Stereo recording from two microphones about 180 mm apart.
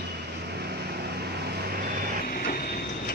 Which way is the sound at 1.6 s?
60° right (ahead or behind).